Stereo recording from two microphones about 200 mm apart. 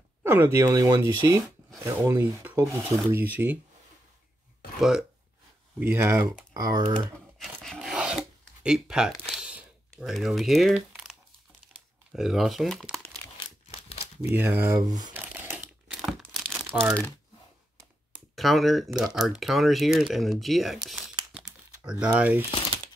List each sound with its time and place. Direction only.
0.2 s speech: 10° right (ahead or behind)
4.7 s speech: centre (ahead or behind)
5.8 s speech: 15° right (ahead or behind)
7.3 s filing: centre (ahead or behind)
9.3 s a sound: 5° right (ahead or behind)
11.6 s crumpling: centre (ahead or behind)
13.7 s crumpling: 30° left (ahead or behind)
14.3 s speech: 10° right (ahead or behind)
15.2 s crumpling: 10° right (ahead or behind)
18.3 s speech: centre (ahead or behind)
21.3 s typing: 5° right (ahead or behind)
22.1 s speech: 10° right (ahead or behind)